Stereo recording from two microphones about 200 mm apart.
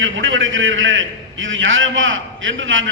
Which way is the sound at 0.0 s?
75° right (ahead or behind).